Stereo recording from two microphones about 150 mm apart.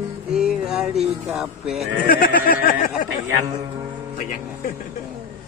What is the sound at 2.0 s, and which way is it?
Speech, 70° left (ahead or behind).